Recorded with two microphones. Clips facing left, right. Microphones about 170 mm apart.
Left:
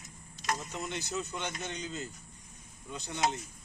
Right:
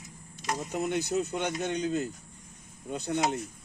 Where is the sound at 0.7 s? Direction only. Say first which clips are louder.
Right 8 dB; 55° right (ahead or behind).